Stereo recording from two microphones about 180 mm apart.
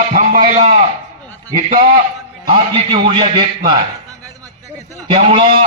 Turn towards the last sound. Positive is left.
turn(degrees=-30)  # may be behind; listen again after turning